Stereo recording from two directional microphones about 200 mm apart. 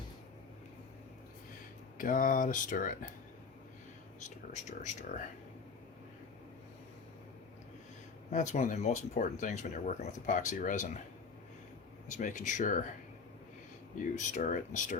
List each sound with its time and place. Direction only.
2.0 s speech: 40° left (ahead or behind)
4.2 s speech: 35° left (ahead or behind)
8.3 s speech: 35° left (ahead or behind)
12.0 s speech: 40° left (ahead or behind)
14.0 s speech: 40° left (ahead or behind)